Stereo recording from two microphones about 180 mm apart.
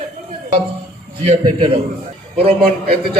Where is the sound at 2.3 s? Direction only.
35° right (ahead or behind).